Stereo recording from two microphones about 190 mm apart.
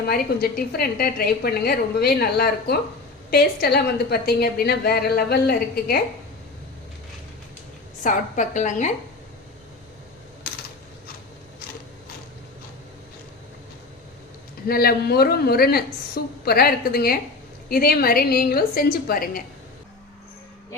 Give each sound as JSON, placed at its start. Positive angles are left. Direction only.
{"t": 0.1, "sound": "a woman's voice", "side_deg": 55}
{"t": 8.0, "sound": "a woman's voice", "side_deg": 40}
{"t": 14.7, "sound": "a woman's voice", "side_deg": 55}